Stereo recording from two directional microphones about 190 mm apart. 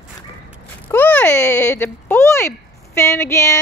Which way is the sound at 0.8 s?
10° left (ahead or behind).